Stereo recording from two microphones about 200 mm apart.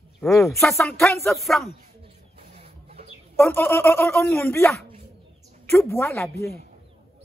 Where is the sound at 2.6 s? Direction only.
30° right (ahead or behind).